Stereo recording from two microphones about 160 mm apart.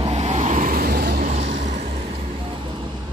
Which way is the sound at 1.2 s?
45° right (ahead or behind).